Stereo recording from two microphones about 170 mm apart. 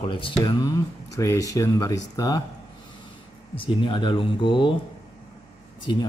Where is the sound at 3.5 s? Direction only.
30° left (ahead or behind).